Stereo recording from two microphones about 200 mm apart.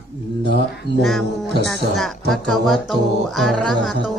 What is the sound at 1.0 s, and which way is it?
Speech, centre (ahead or behind).